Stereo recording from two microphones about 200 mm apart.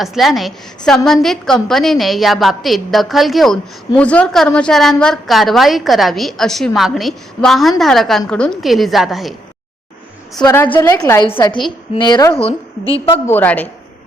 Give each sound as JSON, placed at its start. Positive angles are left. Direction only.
{"t": 0.0, "sound": "a woman's voice", "side_deg": 0}
{"t": 10.4, "sound": "a woman's voice", "side_deg": 10}
{"t": 13.2, "sound": "a woman's voice", "side_deg": 10}